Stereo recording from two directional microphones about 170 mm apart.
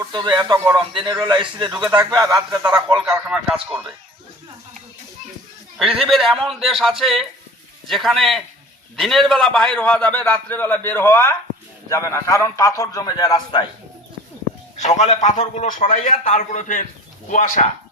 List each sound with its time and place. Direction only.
0.0 s a man's voice: 25° right (ahead or behind)
2.7 s a man's voice: 5° right (ahead or behind)
6.0 s a man's voice: centre (ahead or behind); by 13.7 s 25° left (ahead or behind)
14.8 s a man's voice: 40° left (ahead or behind)